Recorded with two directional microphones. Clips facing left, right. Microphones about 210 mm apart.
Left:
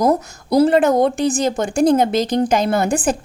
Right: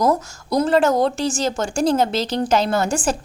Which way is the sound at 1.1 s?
55° left (ahead or behind).